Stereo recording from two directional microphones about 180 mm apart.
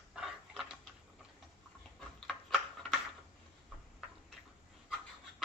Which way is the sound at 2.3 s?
Centre (ahead or behind).